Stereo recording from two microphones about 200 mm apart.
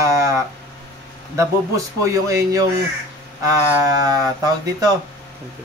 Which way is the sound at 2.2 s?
15° right (ahead or behind).